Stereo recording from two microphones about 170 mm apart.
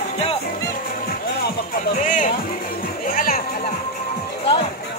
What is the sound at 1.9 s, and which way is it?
Music, 50° left (ahead or behind).